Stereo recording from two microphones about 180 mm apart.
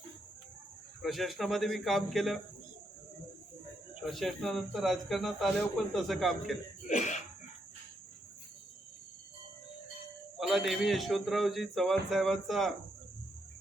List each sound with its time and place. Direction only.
1.0 s speech: centre (ahead or behind)
4.1 s speech: centre (ahead or behind)
6.8 s cough: 40° left (ahead or behind)
10.3 s speech: centre (ahead or behind)